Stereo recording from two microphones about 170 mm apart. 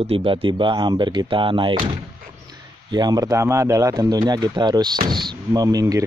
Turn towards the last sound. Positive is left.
turn(degrees=-20)  # may be behind; listen again after turning